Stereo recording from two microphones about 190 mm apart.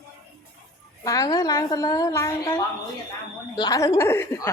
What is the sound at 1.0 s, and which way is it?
A woman's voice, 20° left (ahead or behind).